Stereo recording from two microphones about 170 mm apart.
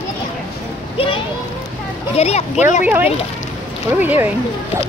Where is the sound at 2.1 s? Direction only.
40° left (ahead or behind).